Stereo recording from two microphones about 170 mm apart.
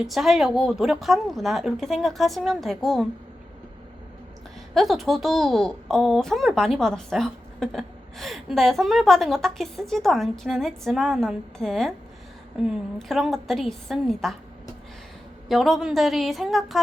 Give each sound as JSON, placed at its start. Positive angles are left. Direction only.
{"t": 0.0, "sound": "a woman's voice", "side_deg": 0}
{"t": 4.7, "sound": "a woman's voice", "side_deg": 0}
{"t": 15.4, "sound": "a woman's voice", "side_deg": 0}